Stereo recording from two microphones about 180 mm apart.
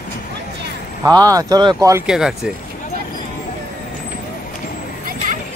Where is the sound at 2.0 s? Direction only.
5° right (ahead or behind).